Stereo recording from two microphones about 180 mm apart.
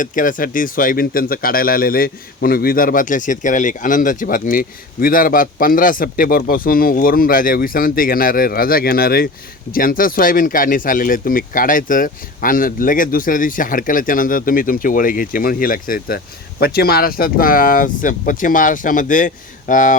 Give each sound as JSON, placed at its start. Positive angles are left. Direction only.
{"t": 0.0, "sound": "speech", "side_deg": 45}